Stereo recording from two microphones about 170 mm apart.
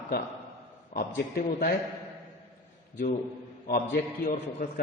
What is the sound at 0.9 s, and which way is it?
Speech, 50° left (ahead or behind).